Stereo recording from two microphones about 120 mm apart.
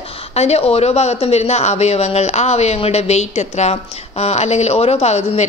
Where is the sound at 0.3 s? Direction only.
60° left (ahead or behind).